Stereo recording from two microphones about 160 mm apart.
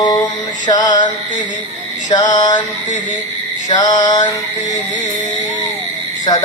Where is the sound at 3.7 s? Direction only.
25° left (ahead or behind).